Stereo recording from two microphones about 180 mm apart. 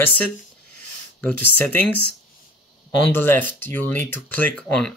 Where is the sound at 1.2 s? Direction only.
10° left (ahead or behind).